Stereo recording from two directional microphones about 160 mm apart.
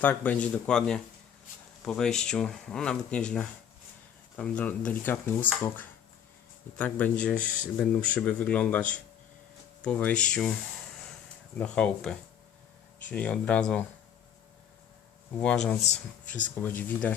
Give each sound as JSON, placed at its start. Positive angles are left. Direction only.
{"t": 0.0, "sound": "speech", "side_deg": 10}
{"t": 9.8, "sound": "speech", "side_deg": 5}
{"t": 11.5, "sound": "speech", "side_deg": 5}
{"t": 15.4, "sound": "speech", "side_deg": 5}
{"t": 15.8, "sound": "speech", "side_deg": 50}
{"t": 16.6, "sound": "speech", "side_deg": 10}